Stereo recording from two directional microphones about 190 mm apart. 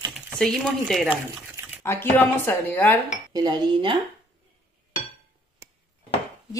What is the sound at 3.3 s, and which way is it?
Cutlery, 20° right (ahead or behind).